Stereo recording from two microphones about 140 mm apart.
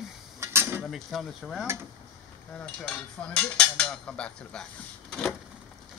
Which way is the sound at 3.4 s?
5° left (ahead or behind).